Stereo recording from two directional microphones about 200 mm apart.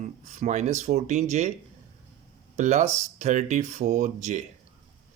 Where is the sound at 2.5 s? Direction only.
35° right (ahead or behind).